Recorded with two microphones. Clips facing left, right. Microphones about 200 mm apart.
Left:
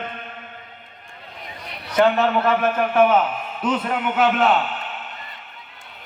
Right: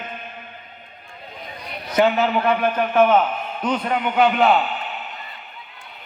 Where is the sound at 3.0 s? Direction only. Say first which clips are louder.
Right 1 dB; 10° left (ahead or behind).